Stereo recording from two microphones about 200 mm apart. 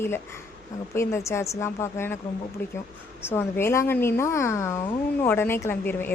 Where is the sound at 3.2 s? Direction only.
10° left (ahead or behind).